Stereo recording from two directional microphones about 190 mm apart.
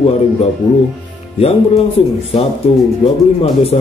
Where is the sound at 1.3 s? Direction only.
30° left (ahead or behind).